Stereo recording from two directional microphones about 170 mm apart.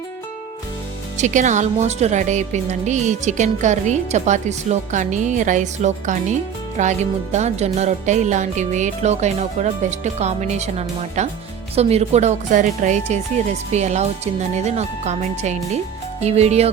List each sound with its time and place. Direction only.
1.2 s a woman's voice: 45° right (ahead or behind)